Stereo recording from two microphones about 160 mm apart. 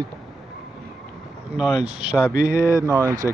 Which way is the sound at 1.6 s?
5° right (ahead or behind).